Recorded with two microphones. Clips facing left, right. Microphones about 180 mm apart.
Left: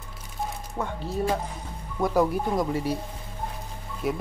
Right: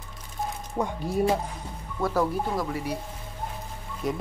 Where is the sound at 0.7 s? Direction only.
15° right (ahead or behind).